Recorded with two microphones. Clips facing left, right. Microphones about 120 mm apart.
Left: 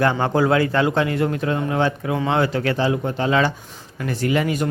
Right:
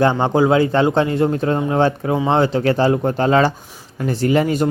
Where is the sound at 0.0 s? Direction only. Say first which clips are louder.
Right 3 dB; 20° right (ahead or behind).